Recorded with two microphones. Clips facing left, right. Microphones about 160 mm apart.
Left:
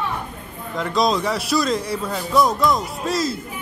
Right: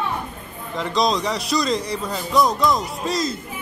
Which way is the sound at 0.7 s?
Centre (ahead or behind).